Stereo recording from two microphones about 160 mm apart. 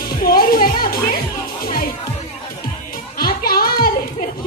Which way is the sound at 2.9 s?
65° left (ahead or behind).